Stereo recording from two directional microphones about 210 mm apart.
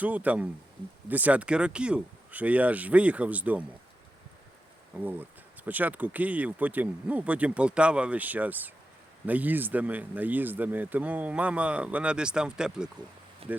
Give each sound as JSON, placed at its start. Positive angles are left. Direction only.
{"t": 0.0, "sound": "speech", "side_deg": -5}
{"t": 4.9, "sound": "speech", "side_deg": -10}
{"t": 13.4, "sound": "speech", "side_deg": -25}